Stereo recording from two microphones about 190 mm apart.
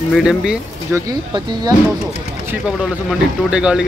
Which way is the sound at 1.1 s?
20° right (ahead or behind).